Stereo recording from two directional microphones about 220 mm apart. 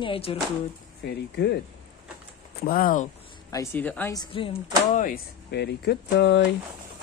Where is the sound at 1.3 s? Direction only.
50° left (ahead or behind).